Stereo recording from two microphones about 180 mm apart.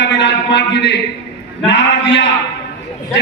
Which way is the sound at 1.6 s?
75° left (ahead or behind).